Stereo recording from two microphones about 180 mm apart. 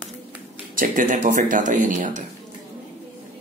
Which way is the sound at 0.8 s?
45° right (ahead or behind).